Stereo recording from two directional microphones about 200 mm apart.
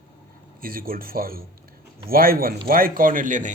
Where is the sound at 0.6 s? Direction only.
45° right (ahead or behind).